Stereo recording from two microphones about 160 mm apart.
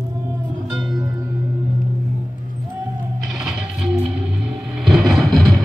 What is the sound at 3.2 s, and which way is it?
Music, centre (ahead or behind).